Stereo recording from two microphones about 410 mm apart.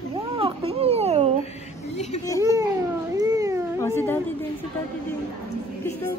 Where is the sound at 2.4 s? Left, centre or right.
Centre.